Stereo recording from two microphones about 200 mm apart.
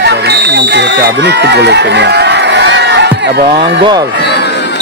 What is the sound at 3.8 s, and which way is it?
Speech, 20° right (ahead or behind).